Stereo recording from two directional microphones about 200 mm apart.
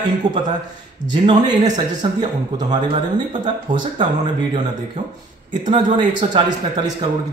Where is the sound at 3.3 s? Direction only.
40° right (ahead or behind).